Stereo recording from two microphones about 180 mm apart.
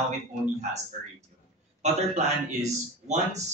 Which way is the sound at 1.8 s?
40° right (ahead or behind).